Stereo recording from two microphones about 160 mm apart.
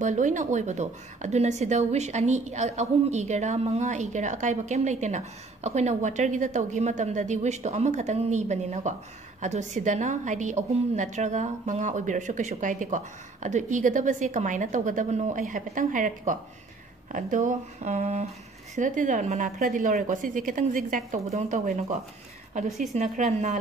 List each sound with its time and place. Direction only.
0.0 s a woman's voice: 50° right (ahead or behind)